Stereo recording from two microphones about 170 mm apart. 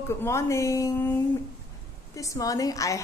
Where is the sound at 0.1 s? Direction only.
15° left (ahead or behind).